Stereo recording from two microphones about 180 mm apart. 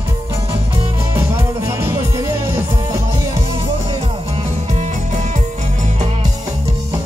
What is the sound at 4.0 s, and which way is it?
Music, 35° right (ahead or behind).